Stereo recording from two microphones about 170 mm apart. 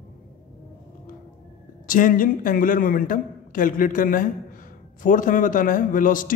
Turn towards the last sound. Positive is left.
turn(degrees=50)  # may be behind; listen again after turning